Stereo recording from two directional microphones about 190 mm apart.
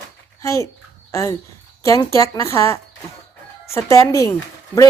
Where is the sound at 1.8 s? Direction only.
15° left (ahead or behind).